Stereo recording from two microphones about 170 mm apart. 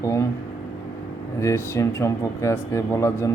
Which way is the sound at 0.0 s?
20° left (ahead or behind).